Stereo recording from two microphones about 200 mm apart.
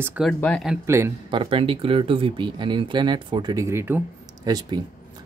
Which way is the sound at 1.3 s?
25° right (ahead or behind).